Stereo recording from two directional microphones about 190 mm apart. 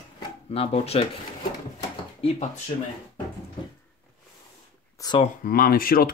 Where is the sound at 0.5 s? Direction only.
30° left (ahead or behind).